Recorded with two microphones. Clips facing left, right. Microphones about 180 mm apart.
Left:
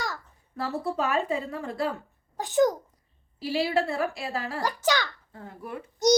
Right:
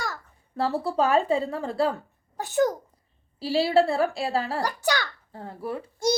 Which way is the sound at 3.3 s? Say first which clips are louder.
Right 5 dB; 30° right (ahead or behind).